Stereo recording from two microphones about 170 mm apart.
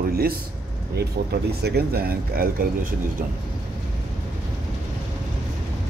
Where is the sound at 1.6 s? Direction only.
70° right (ahead or behind).